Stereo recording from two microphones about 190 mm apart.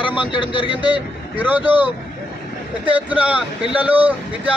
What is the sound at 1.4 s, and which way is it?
Speech, 10° right (ahead or behind).